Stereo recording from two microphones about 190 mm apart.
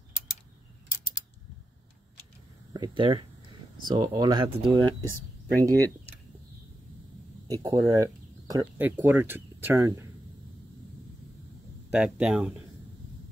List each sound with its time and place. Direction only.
2.7 s speech: 25° right (ahead or behind)
5.5 s speech: 10° left (ahead or behind)
7.4 s speech: 20° right (ahead or behind)
11.9 s speech: 5° right (ahead or behind)